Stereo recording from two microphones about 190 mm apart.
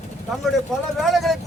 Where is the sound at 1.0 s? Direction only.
Centre (ahead or behind).